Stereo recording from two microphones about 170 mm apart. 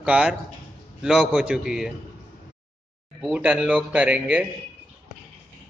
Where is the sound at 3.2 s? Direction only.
5° right (ahead or behind).